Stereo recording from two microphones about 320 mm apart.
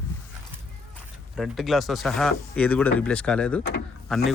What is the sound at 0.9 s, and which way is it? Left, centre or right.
A man's voice, centre.